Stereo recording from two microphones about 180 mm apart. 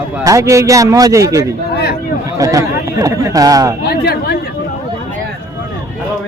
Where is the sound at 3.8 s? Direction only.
60° left (ahead or behind).